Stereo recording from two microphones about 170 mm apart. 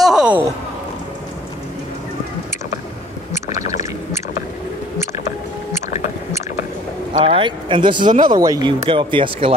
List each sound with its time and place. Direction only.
0.0 s a sound: 5° right (ahead or behind)
7.2 s speech: 30° right (ahead or behind)
8.0 s speech: 50° right (ahead or behind)
8.3 s speech: 20° right (ahead or behind)